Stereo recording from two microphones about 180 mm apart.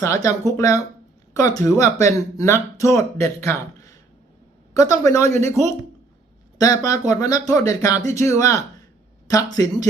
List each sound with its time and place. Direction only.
0.0 s speech: 20° left (ahead or behind)
4.7 s speech: 20° left (ahead or behind)
6.6 s speech: 20° left (ahead or behind)